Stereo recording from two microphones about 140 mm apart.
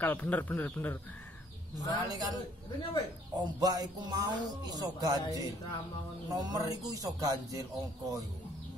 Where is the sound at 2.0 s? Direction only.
25° right (ahead or behind).